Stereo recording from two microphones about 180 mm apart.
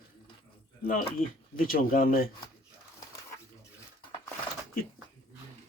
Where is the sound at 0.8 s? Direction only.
55° left (ahead or behind).